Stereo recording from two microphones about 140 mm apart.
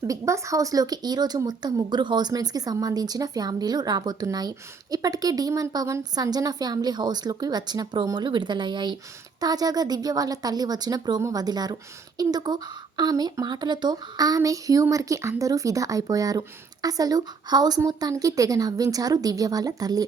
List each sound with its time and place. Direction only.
0.0 s speech: 20° right (ahead or behind)